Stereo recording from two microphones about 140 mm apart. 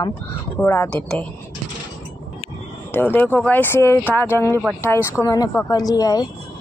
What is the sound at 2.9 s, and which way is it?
Speech, 15° left (ahead or behind).